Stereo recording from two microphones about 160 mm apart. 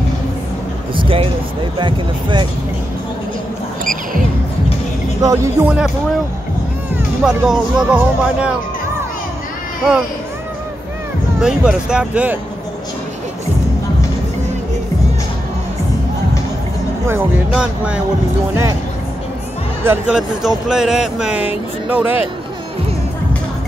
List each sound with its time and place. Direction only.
0.9 s a sound: 35° right (ahead or behind)
1.8 s speech: 30° right (ahead or behind)
3.8 s music: 55° right (ahead or behind)
5.2 s speech: 20° right (ahead or behind)
7.2 s speech: 5° right (ahead or behind)
11.4 s speech: 5° right (ahead or behind)
17.1 s speech: 5° right (ahead or behind)
18.5 s speech: 20° right (ahead or behind)
19.8 s speech: 15° right (ahead or behind)
20.2 s speech: 5° right (ahead or behind)